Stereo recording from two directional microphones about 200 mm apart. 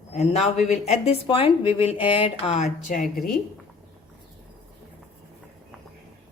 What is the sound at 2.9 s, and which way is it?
Speech, 40° left (ahead or behind).